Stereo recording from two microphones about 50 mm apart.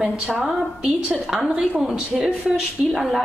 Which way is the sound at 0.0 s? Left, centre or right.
Centre.